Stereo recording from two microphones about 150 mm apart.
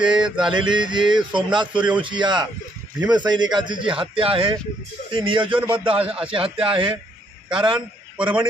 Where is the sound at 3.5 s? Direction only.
30° right (ahead or behind).